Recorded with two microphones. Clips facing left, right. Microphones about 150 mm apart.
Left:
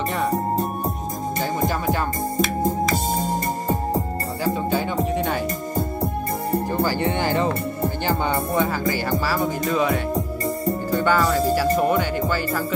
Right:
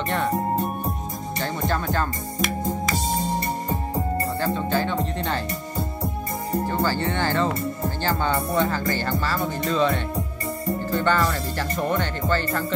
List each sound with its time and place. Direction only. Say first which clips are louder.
1.4 s music: left 2 dB; 10° left (ahead or behind)
3.2 s music: left 2 dB; 45° left (ahead or behind)
4.7 s music: left 2 dB; 10° left (ahead or behind)
6.7 s speech: left 2 dB; 15° left (ahead or behind)